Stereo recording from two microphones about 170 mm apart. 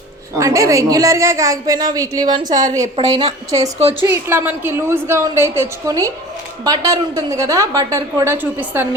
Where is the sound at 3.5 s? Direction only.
20° right (ahead or behind).